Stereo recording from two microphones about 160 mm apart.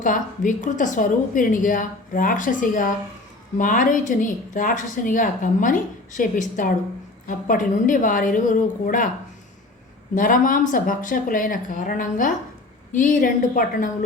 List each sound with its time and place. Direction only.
0.0 s a woman's voice: 55° left (ahead or behind)
10.2 s a woman's voice: 55° left (ahead or behind)